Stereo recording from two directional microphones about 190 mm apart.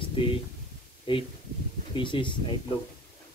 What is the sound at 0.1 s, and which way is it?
Speech, 30° left (ahead or behind).